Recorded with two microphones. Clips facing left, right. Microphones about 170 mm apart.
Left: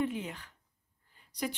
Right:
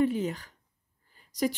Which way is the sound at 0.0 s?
40° right (ahead or behind).